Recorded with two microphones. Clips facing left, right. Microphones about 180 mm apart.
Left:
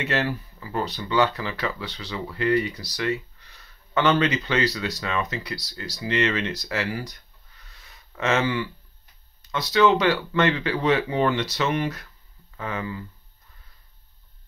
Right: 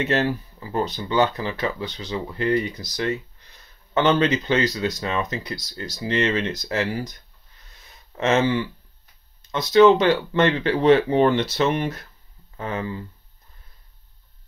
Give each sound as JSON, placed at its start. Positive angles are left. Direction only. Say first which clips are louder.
{"t": 0.0, "sound": "speech", "louder": "right 4 dB", "side_deg": -25}
{"t": 8.2, "sound": "speech", "louder": "right 4 dB", "side_deg": -25}